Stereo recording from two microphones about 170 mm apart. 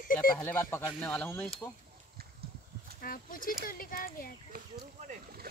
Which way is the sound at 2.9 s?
55° left (ahead or behind).